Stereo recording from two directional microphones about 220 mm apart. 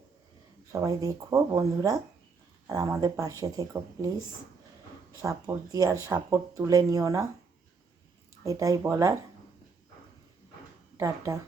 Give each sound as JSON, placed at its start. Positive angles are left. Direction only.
{"t": 0.7, "sound": "speech", "side_deg": -15}
{"t": 5.2, "sound": "speech", "side_deg": -15}
{"t": 8.4, "sound": "speech", "side_deg": -15}
{"t": 10.9, "sound": "speech", "side_deg": -15}